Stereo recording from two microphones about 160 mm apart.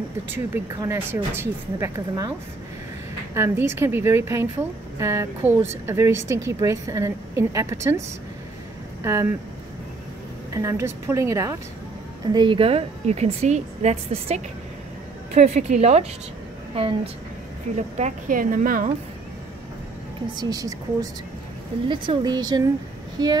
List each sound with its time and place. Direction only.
0.7 s a woman's voice: 15° right (ahead or behind)
3.3 s a woman's voice: 15° right (ahead or behind)
9.0 s a woman's voice: 15° right (ahead or behind)
10.5 s a woman's voice: 20° right (ahead or behind)
12.3 s a woman's voice: 30° right (ahead or behind)
17.7 s a woman's voice: 45° right (ahead or behind)
20.3 s a woman's voice: 25° right (ahead or behind)